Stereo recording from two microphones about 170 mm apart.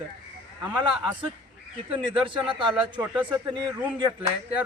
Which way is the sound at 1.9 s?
30° right (ahead or behind).